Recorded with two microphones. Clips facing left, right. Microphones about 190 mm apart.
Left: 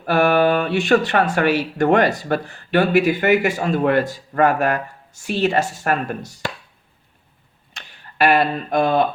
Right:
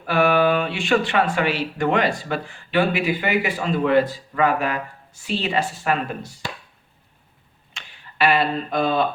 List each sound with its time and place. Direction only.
0.0 s speech: 45° left (ahead or behind)
7.7 s speech: 40° left (ahead or behind)